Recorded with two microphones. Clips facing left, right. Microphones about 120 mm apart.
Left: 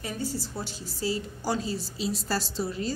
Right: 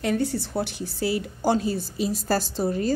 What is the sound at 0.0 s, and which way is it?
A woman's voice, 70° right (ahead or behind).